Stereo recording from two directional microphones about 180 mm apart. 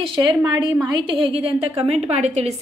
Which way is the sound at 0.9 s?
30° right (ahead or behind).